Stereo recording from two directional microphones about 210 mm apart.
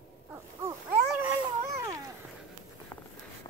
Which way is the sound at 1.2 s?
15° right (ahead or behind).